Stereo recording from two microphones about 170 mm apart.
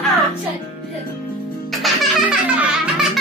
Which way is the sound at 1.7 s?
Centre (ahead or behind).